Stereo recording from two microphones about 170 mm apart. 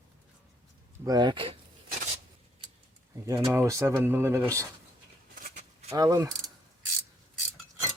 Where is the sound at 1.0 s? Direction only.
25° right (ahead or behind).